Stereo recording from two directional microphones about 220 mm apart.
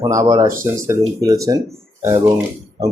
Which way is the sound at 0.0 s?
15° right (ahead or behind).